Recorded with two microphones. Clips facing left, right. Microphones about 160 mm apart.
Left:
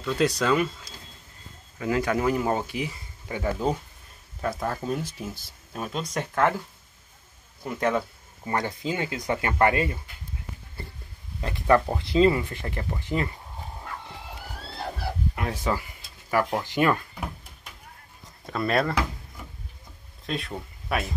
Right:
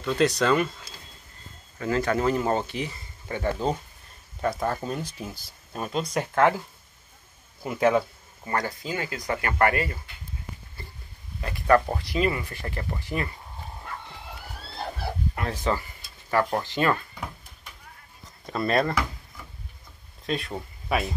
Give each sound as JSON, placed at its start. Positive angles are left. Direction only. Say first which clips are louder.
{"t": 0.0, "sound": "speech", "louder": "right 1 dB", "side_deg": 5}
{"t": 1.8, "sound": "speech", "louder": "even", "side_deg": 10}
{"t": 7.6, "sound": "speech", "louder": "right 4 dB", "side_deg": -5}
{"t": 8.5, "sound": "speech", "louder": "left 1 dB", "side_deg": 20}
{"t": 11.4, "sound": "speech", "louder": "even", "side_deg": 20}
{"t": 15.3, "sound": "speech", "louder": "right 1 dB", "side_deg": 10}
{"t": 18.5, "sound": "speech", "louder": "right 1 dB", "side_deg": 0}
{"t": 20.2, "sound": "speech", "louder": "right 2 dB", "side_deg": 0}